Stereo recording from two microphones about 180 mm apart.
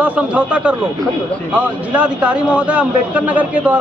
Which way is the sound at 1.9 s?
5° right (ahead or behind).